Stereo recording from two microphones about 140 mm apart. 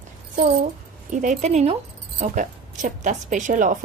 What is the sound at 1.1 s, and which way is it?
Speech, 65° right (ahead or behind).